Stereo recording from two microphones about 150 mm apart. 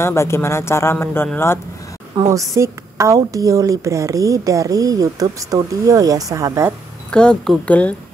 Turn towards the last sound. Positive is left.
turn(degrees=10)  # may be behind; listen again after turning